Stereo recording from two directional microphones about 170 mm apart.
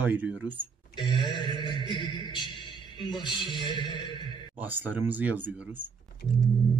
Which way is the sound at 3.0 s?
30° left (ahead or behind).